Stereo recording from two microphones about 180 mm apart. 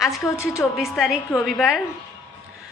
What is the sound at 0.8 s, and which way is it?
A woman's voice, centre (ahead or behind).